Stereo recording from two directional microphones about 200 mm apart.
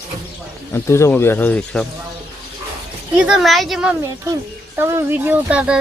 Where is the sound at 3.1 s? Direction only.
5° right (ahead or behind).